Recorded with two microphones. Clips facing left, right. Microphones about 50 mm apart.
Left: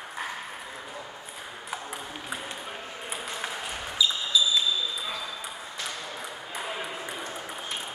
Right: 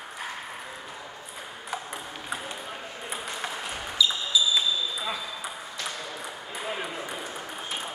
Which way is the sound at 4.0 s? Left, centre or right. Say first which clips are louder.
Right 1 dB; centre.